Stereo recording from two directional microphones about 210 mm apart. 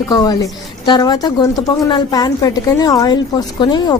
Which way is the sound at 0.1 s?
20° left (ahead or behind).